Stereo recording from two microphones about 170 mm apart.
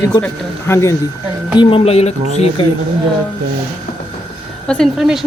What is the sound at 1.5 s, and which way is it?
Speech, 30° left (ahead or behind).